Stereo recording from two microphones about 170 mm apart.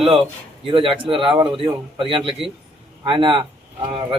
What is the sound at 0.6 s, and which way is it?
A man's voice, 30° right (ahead or behind).